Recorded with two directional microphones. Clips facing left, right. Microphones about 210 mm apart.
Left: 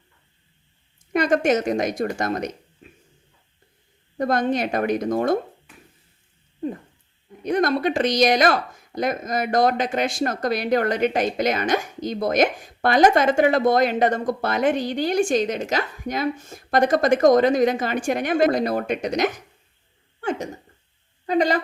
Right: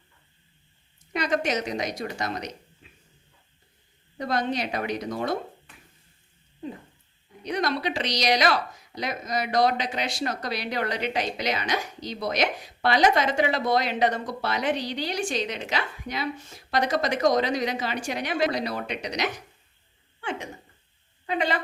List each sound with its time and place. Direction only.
1.1 s speech: 50° left (ahead or behind)
4.2 s speech: 50° left (ahead or behind)
7.4 s speech: 50° left (ahead or behind)
21.2 s a woman's voice: 40° left (ahead or behind)